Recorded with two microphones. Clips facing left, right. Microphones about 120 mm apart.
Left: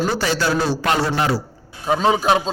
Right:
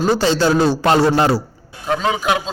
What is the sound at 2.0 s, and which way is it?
Speech, 30° left (ahead or behind).